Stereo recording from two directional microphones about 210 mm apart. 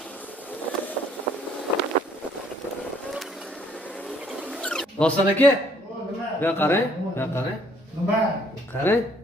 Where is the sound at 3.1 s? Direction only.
Centre (ahead or behind).